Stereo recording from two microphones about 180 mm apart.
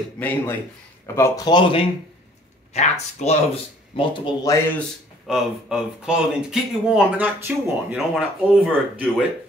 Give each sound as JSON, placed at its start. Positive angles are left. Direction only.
{"t": 0.2, "sound": "speech", "side_deg": 10}
{"t": 2.7, "sound": "speech", "side_deg": 40}
{"t": 3.9, "sound": "speech", "side_deg": 30}
{"t": 4.7, "sound": "speech", "side_deg": 0}